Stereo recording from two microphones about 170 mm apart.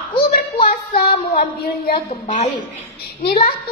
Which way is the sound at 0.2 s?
65° left (ahead or behind).